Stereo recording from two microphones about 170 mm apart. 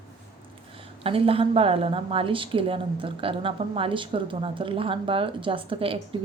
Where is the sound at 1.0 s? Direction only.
35° right (ahead or behind).